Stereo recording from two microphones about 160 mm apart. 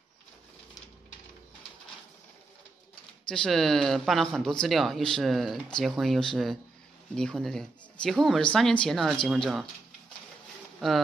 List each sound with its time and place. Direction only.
3.3 s speech: 5° left (ahead or behind)
10.8 s speech: centre (ahead or behind)